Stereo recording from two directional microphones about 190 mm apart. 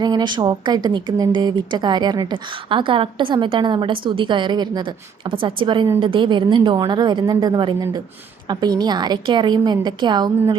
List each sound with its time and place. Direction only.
0.0 s a woman's voice: 20° right (ahead or behind)